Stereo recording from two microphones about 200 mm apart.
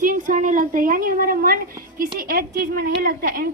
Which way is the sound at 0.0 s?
40° right (ahead or behind).